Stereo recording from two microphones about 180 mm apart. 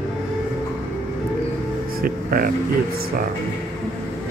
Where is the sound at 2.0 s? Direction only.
55° right (ahead or behind).